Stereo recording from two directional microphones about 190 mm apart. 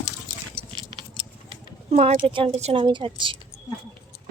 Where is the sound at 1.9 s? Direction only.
35° right (ahead or behind).